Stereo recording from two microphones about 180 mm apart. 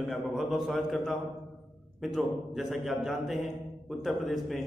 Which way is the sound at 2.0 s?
Centre (ahead or behind).